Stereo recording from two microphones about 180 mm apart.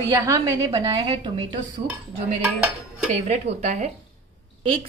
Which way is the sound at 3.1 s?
35° right (ahead or behind).